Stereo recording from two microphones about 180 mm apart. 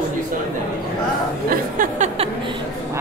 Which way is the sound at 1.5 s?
45° right (ahead or behind).